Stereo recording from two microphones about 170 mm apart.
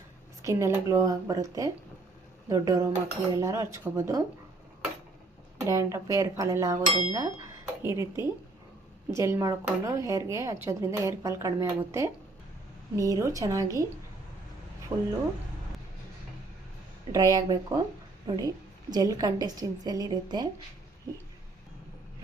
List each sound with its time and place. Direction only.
0.4 s a woman's voice: 20° right (ahead or behind)
5.5 s a woman's voice: 20° right (ahead or behind)
14.9 s a woman's voice: 25° right (ahead or behind)
17.1 s a woman's voice: 20° right (ahead or behind)